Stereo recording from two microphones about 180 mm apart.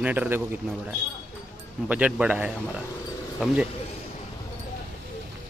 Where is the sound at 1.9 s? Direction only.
5° right (ahead or behind).